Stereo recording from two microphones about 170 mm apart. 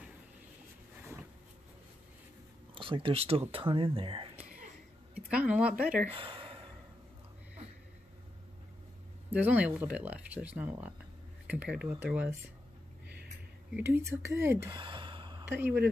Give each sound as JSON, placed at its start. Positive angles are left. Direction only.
{"t": 2.7, "sound": "speech", "side_deg": -30}
{"t": 5.1, "sound": "speech", "side_deg": -10}
{"t": 6.0, "sound": "a sound", "side_deg": -30}
{"t": 9.3, "sound": "speech", "side_deg": -10}
{"t": 13.7, "sound": "speech", "side_deg": -15}
{"t": 14.7, "sound": "sigh", "side_deg": -30}
{"t": 15.6, "sound": "speech", "side_deg": -10}